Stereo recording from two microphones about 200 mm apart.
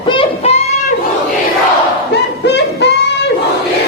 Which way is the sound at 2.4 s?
55° left (ahead or behind).